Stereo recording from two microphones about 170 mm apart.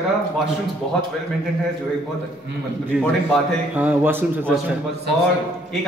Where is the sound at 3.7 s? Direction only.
10° right (ahead or behind).